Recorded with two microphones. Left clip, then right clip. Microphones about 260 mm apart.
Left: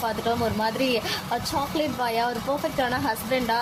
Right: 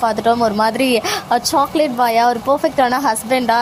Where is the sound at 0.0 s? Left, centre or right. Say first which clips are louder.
Right 11 dB; right.